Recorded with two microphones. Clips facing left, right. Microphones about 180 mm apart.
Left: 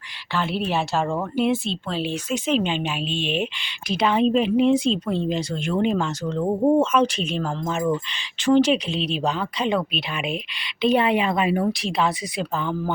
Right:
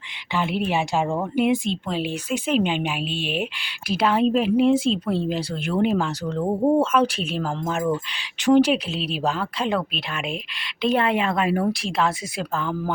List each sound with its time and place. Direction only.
0.3 s a woman's voice: 15° right (ahead or behind)